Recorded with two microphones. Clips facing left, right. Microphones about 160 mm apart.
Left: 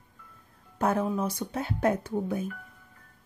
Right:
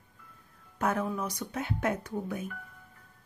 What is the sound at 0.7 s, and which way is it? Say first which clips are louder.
A woman's voice: left 4 dB; 30° left (ahead or behind).